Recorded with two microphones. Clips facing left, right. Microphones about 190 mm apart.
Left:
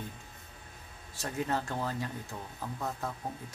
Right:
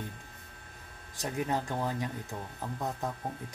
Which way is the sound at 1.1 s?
15° right (ahead or behind).